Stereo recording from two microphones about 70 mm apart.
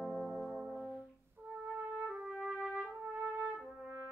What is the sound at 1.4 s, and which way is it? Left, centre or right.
Music, right.